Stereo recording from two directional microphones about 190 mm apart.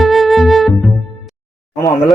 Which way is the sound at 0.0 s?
Centre (ahead or behind).